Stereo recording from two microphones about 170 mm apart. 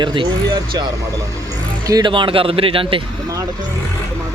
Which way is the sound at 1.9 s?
25° right (ahead or behind).